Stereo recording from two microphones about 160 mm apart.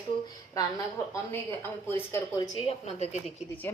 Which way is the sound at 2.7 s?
45° left (ahead or behind).